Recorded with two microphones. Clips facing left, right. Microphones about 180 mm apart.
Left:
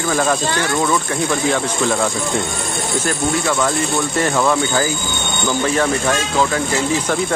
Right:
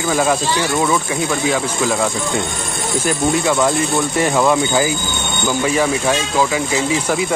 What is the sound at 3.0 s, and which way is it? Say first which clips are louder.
Speech: right 3 dB; 20° right (ahead or behind).